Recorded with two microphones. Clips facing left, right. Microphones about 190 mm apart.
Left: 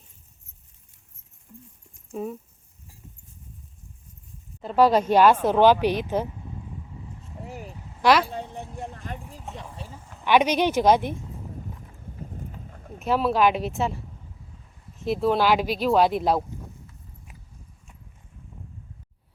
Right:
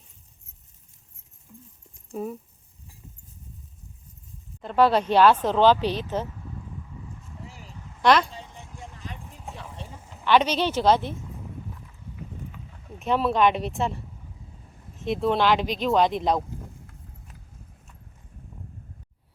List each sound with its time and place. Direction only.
2.1 s speech: centre (ahead or behind)
4.6 s speech: 10° left (ahead or behind)
7.4 s vehicle: 55° left (ahead or behind)
8.0 s speech: 5° left (ahead or behind)
8.3 s a sound: 60° left (ahead or behind)
8.7 s vehicle: 55° left (ahead or behind)
9.6 s a sound: 5° left (ahead or behind)
10.2 s speech: 10° left (ahead or behind)
11.9 s boat: 40° left (ahead or behind)
13.0 s speech: centre (ahead or behind)